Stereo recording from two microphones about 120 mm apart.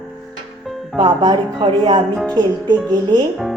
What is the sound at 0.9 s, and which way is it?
A woman's voice, 35° right (ahead or behind).